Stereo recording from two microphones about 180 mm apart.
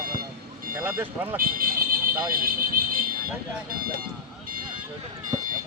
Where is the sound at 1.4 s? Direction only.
55° right (ahead or behind).